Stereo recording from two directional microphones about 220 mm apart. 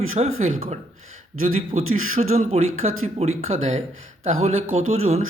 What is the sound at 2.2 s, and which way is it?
Speech, 30° right (ahead or behind).